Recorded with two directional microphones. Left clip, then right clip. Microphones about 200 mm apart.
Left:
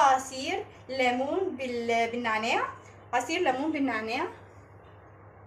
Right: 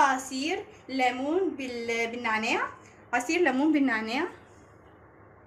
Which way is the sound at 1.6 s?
55° right (ahead or behind).